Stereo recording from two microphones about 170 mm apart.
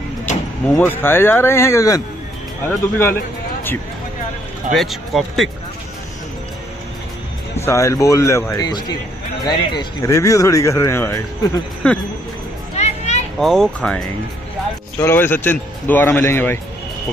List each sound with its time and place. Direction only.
0.7 s speech: 10° left (ahead or behind)
4.7 s speech: centre (ahead or behind)
7.6 s speech: 15° left (ahead or behind)
12.7 s a sound: 40° left (ahead or behind)
13.4 s speech: centre (ahead or behind)
15.0 s speech: 15° left (ahead or behind)